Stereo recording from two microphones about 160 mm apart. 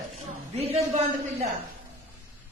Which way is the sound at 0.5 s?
40° right (ahead or behind).